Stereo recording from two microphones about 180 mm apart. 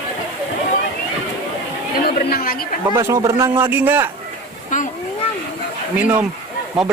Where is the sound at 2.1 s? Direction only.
55° left (ahead or behind).